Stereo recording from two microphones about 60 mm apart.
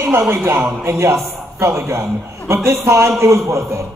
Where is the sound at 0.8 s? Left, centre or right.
Right.